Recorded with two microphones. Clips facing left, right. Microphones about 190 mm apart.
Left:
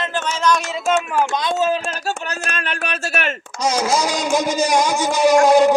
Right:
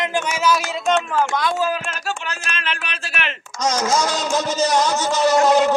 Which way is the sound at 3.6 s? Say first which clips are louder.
Left 1 dB; 10° left (ahead or behind).